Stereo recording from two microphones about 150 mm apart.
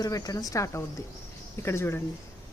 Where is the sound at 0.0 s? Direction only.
25° left (ahead or behind).